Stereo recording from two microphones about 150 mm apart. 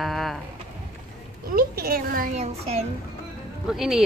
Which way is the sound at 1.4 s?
80° right.